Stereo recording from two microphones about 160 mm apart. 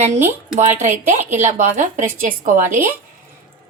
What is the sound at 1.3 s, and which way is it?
A woman's voice, 50° right (ahead or behind).